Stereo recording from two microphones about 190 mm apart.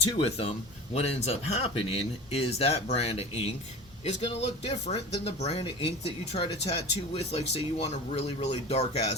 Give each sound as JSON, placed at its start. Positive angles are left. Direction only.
{"t": 0.0, "sound": "speech", "side_deg": 30}